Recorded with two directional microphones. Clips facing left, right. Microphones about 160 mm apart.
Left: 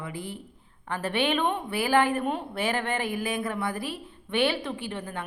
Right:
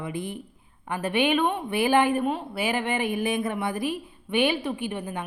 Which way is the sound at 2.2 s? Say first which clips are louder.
Right 1 dB; 5° right (ahead or behind).